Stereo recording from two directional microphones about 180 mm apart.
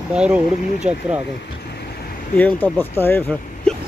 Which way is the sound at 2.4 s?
10° left (ahead or behind).